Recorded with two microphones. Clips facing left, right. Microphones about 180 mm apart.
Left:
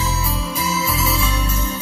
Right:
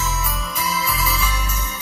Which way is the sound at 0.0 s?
30° left (ahead or behind).